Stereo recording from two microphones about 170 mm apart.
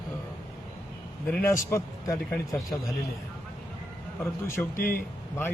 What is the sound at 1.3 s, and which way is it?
A man's voice, 15° left (ahead or behind).